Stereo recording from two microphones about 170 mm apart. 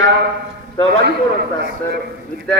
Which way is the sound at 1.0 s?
70° right (ahead or behind).